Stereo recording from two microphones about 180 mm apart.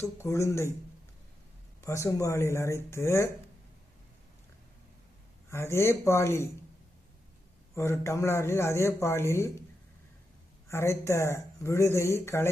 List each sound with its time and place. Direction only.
0.0 s speech: 15° left (ahead or behind)
1.8 s speech: 15° left (ahead or behind)
5.5 s speech: 15° left (ahead or behind)
7.8 s speech: 15° left (ahead or behind)
10.7 s speech: 15° left (ahead or behind)